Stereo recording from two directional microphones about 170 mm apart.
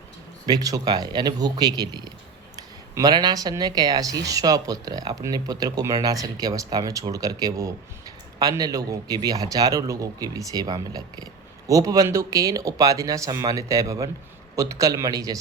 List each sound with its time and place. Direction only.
0.4 s speech: 20° right (ahead or behind)